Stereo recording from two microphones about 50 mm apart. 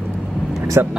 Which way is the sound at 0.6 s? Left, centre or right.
Right.